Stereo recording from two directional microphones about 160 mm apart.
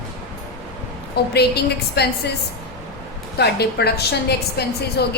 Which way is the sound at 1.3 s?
90° left.